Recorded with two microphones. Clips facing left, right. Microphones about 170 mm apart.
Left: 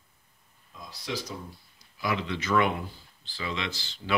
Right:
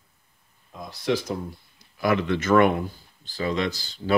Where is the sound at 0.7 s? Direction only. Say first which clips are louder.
Right 10 dB; 55° right (ahead or behind).